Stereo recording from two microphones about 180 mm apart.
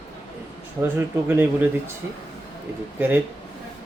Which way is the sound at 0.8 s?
10° right (ahead or behind).